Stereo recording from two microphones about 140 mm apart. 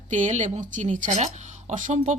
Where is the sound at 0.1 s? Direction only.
60° right (ahead or behind).